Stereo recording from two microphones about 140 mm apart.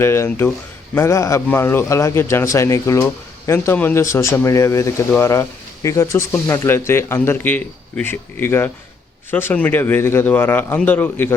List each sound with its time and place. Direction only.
0.0 s speech: 20° left (ahead or behind)